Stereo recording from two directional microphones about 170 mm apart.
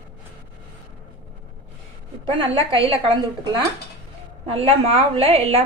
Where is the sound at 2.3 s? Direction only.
30° right (ahead or behind).